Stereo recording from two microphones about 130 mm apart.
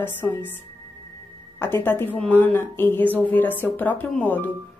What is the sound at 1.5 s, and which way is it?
A woman's voice, 15° left (ahead or behind).